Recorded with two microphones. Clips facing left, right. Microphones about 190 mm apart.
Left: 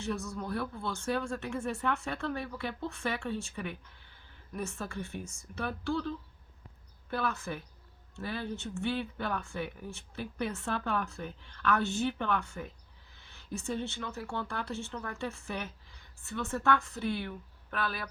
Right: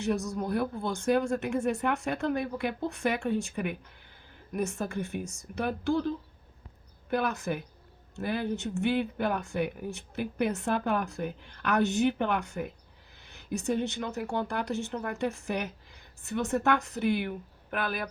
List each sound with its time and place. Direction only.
0.0 s speech: 15° right (ahead or behind)
4.5 s speech: 15° right (ahead or behind)